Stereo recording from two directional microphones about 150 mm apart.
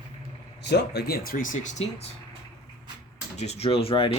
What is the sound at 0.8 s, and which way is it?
Speech, 90° left.